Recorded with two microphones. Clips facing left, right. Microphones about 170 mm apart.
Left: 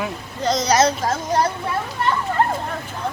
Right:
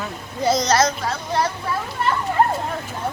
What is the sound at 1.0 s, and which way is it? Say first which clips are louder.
Speech: left 3 dB; 40° left (ahead or behind).